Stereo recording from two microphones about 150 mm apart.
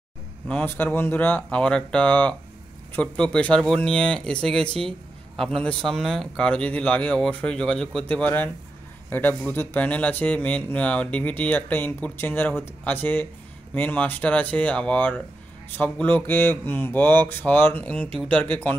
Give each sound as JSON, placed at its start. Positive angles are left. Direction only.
{"t": 0.5, "sound": "speech", "side_deg": 10}
{"t": 4.6, "sound": "speech", "side_deg": -40}
{"t": 5.3, "sound": "speech", "side_deg": 0}